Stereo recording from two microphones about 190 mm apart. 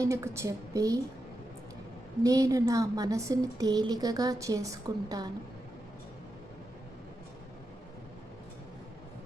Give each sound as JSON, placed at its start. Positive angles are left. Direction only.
{"t": 0.0, "sound": "a woman's voice", "side_deg": -15}
{"t": 2.2, "sound": "a woman's voice", "side_deg": -20}